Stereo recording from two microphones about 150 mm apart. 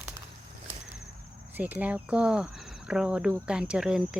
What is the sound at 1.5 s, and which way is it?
Speech, 10° right (ahead or behind).